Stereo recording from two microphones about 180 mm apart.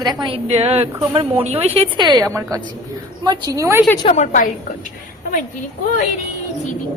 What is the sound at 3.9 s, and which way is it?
Speech, 30° left (ahead or behind).